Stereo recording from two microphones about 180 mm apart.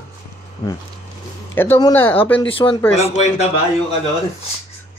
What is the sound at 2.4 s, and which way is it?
Speech, 30° left (ahead or behind).